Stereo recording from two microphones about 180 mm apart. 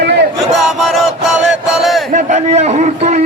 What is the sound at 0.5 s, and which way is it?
Chant, centre (ahead or behind).